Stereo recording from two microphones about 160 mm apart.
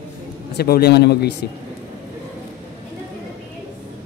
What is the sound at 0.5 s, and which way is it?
Speech, 75° left (ahead or behind).